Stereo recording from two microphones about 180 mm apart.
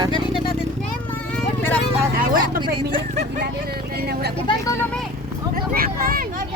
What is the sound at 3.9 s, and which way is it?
Speech, 60° right (ahead or behind).